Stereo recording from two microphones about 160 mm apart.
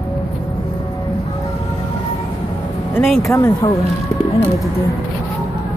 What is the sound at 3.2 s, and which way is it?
Speech, 20° left (ahead or behind).